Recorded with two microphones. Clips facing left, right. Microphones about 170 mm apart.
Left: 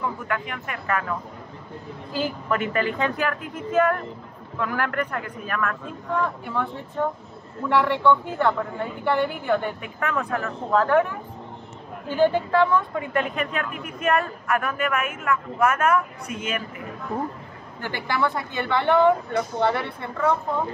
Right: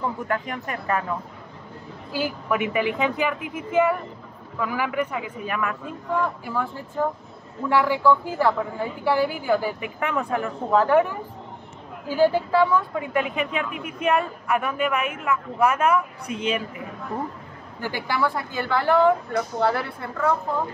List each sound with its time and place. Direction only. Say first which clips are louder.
0.3 s speech: right 2 dB; 35° right (ahead or behind)
2.1 s a woman's voice: right 1 dB; 5° right (ahead or behind)
15.0 s a woman's voice: right 1 dB; 5° left (ahead or behind)
15.7 s a woman's voice: even; 10° right (ahead or behind)
16.3 s speech: right 4 dB; 30° right (ahead or behind)
17.7 s a woman's voice: even; 5° right (ahead or behind)